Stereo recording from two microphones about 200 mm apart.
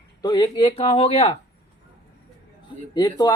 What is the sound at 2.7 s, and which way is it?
Speech, 25° left (ahead or behind).